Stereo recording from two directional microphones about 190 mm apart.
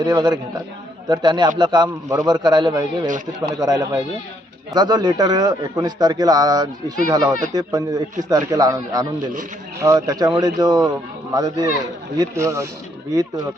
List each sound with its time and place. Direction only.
0.0 s speech: 20° right (ahead or behind)